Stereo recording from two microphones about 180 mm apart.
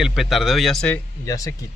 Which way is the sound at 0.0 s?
Centre (ahead or behind).